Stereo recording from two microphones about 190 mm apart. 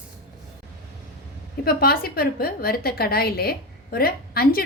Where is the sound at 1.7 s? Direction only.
50° left (ahead or behind).